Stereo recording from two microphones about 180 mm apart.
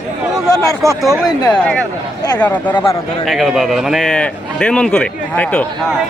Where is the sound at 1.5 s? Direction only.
5° left (ahead or behind).